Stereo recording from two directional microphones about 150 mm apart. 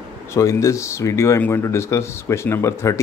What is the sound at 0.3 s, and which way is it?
Speech, 20° left (ahead or behind).